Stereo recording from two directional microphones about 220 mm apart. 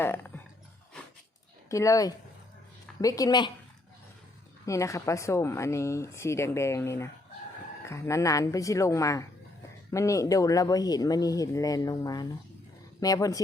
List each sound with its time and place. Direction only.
0.0 s a sound: 10° left (ahead or behind)
1.7 s speech: 15° left (ahead or behind)
4.6 s speech: 15° left (ahead or behind)